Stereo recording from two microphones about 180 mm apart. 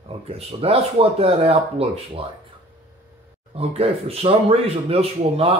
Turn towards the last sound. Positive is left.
turn(degrees=-35)  # may be behind; listen again after turning